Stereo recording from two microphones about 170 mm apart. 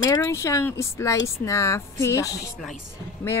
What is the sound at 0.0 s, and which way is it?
Speech, 15° left (ahead or behind).